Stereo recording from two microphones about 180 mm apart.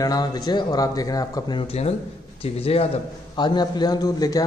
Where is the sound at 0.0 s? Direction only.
20° left (ahead or behind).